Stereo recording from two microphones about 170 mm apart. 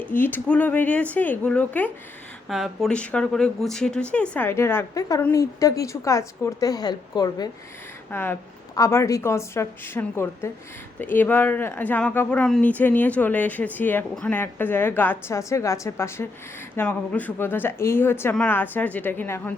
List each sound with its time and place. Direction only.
0.0 s a woman's voice: 10° left (ahead or behind)
8.1 s speech: 10° left (ahead or behind)